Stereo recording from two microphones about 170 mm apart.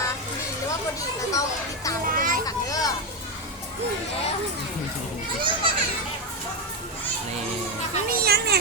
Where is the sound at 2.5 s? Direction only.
20° left (ahead or behind).